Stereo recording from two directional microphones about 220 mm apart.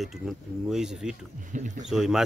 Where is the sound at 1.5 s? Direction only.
35° right (ahead or behind).